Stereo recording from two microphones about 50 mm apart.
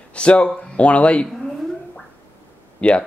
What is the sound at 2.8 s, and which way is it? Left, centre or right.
Speech, left.